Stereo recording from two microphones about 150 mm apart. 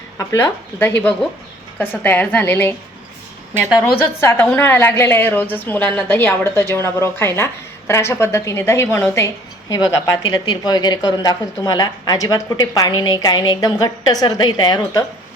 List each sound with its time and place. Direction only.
0.2 s a woman's voice: 20° left (ahead or behind)